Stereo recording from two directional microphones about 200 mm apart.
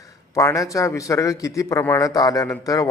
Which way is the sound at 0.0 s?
15° left (ahead or behind).